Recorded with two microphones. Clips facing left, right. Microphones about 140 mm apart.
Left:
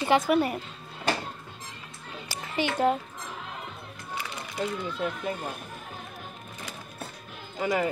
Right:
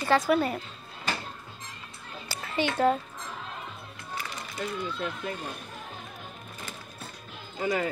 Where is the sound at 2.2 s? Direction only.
15° left (ahead or behind).